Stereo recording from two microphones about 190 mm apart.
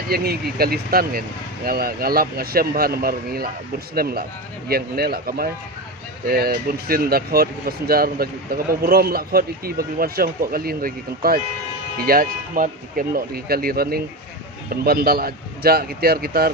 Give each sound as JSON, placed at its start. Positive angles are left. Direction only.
{"t": 0.1, "sound": "a man's voice", "side_deg": -55}